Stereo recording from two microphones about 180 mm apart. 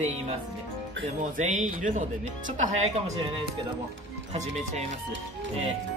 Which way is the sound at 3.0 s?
30° right (ahead or behind).